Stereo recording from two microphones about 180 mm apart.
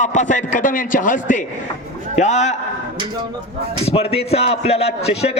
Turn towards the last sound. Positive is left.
turn(degrees=35)  # may be behind; listen again after turning